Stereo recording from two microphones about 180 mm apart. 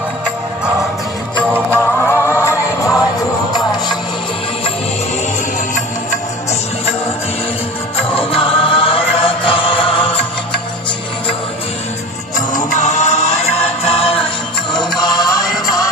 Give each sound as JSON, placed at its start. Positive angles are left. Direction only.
{"t": 1.7, "sound": "music", "side_deg": 10}
{"t": 8.1, "sound": "music", "side_deg": 30}
{"t": 12.5, "sound": "music", "side_deg": 45}